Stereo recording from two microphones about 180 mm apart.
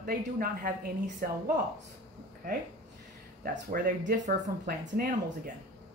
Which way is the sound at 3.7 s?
50° right (ahead or behind).